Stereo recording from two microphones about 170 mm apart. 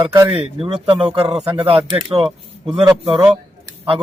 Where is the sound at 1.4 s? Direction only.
35° right (ahead or behind).